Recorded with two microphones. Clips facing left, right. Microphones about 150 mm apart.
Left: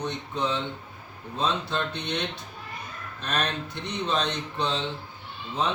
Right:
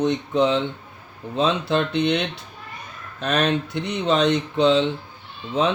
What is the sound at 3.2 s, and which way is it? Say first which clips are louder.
Speech: right 8 dB; 90° right.